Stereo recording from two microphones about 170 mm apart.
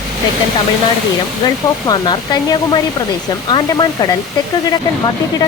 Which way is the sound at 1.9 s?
25° left (ahead or behind).